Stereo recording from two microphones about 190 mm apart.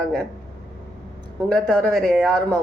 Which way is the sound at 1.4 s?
Centre (ahead or behind).